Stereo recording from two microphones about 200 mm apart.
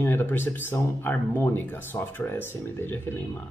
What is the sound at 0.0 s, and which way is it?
A man's voice, 10° left (ahead or behind).